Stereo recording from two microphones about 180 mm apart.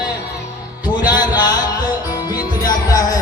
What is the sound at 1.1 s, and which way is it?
Music, 25° left (ahead or behind).